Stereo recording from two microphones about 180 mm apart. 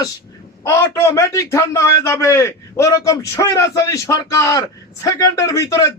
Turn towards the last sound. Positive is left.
turn(degrees=15)  # may be behind; listen again after turning